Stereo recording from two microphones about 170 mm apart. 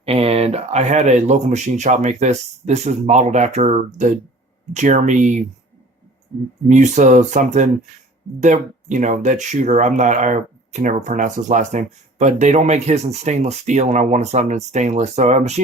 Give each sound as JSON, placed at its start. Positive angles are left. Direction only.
{"t": 0.0, "sound": "speech", "side_deg": -35}
{"t": 6.7, "sound": "speech", "side_deg": -45}